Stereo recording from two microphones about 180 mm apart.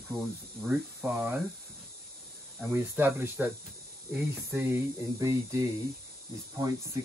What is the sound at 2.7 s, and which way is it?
Speech, 10° right (ahead or behind).